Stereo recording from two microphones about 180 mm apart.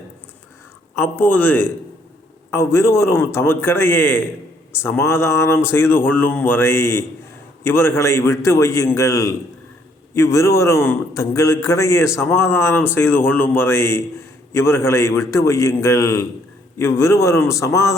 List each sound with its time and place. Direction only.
0.9 s a man's voice: 10° left (ahead or behind)